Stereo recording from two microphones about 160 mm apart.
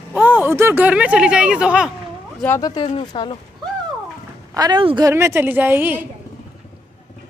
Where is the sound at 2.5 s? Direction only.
30° left (ahead or behind).